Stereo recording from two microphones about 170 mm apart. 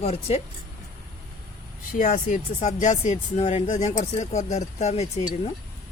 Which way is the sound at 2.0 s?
50° left (ahead or behind).